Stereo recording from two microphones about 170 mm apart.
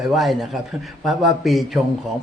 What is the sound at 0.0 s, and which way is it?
A man's voice, centre (ahead or behind).